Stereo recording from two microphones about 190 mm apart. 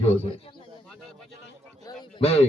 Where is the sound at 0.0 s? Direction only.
30° left (ahead or behind).